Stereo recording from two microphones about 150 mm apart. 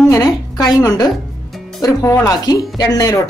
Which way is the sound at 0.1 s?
25° left (ahead or behind).